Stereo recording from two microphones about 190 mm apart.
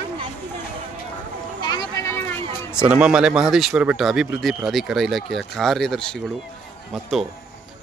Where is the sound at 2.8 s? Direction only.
5° right (ahead or behind).